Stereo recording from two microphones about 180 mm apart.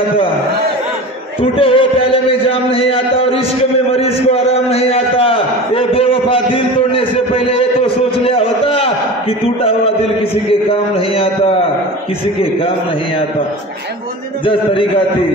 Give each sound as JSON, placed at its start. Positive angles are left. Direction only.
{"t": 1.4, "sound": "a sound", "side_deg": 30}
{"t": 9.6, "sound": "a man's voice", "side_deg": 35}
{"t": 14.4, "sound": "a man's voice", "side_deg": 30}